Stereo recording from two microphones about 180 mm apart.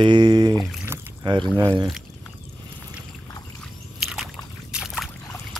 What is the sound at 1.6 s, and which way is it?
Speech, 25° right (ahead or behind).